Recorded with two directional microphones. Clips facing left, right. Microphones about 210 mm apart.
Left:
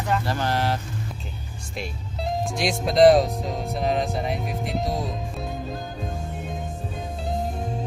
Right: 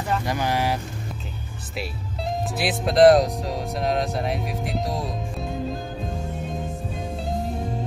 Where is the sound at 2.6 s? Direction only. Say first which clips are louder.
Right 1 dB; centre (ahead or behind).